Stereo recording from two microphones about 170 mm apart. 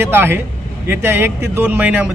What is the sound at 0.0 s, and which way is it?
Speech, 15° right (ahead or behind).